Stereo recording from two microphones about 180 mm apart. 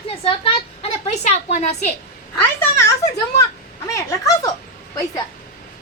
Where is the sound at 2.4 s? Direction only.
15° left (ahead or behind).